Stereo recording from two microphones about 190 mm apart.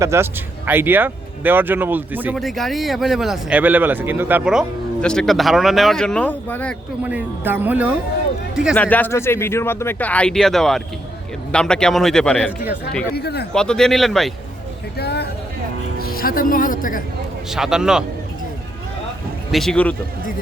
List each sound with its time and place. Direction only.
0.0 s speech: 15° right (ahead or behind); by 6.7 s 10° left (ahead or behind)
7.1 s speech: 10° right (ahead or behind)
8.7 s speech: 10° left (ahead or behind)
13.1 s speech: 60° left (ahead or behind)
13.5 s speech: 5° left (ahead or behind)
14.9 s a sound: 60° left (ahead or behind)
16.0 s speech: 50° left (ahead or behind)
17.5 s speech: 5° right (ahead or behind)
19.5 s speech: centre (ahead or behind)